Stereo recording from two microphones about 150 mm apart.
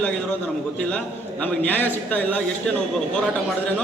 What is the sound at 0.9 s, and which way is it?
A man's voice, 10° left (ahead or behind).